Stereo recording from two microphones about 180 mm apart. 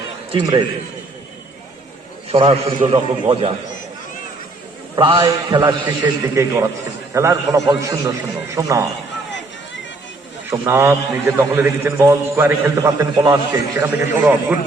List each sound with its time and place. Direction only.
0.3 s a man's voice: 25° right (ahead or behind)
2.3 s a man's voice: 30° right (ahead or behind)
4.9 s a man's voice: 30° right (ahead or behind)
10.5 s a man's voice: 15° right (ahead or behind)